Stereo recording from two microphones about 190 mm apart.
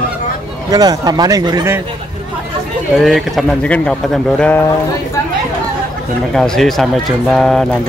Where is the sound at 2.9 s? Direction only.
Centre (ahead or behind).